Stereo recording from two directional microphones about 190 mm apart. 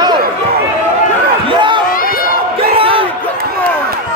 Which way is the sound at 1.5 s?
25° right (ahead or behind).